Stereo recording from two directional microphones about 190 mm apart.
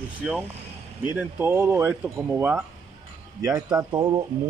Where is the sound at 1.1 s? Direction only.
10° right (ahead or behind).